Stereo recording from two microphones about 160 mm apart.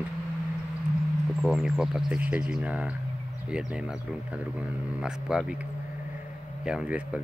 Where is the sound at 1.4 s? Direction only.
5° right (ahead or behind).